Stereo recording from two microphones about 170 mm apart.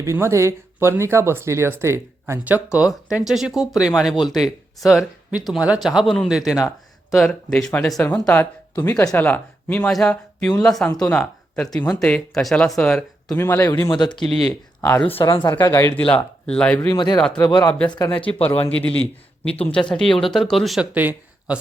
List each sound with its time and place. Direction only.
0.0 s speech: 15° right (ahead or behind)
6.6 s a sound: 15° left (ahead or behind)
7.2 s speech: 5° left (ahead or behind)
14.1 s speech: centre (ahead or behind)
14.8 s speech: 10° left (ahead or behind)
16.9 s speech: 25° left (ahead or behind)
17.2 s speech: 5° left (ahead or behind)
17.4 s speech: 20° left (ahead or behind)
19.9 s speech: 5° left (ahead or behind)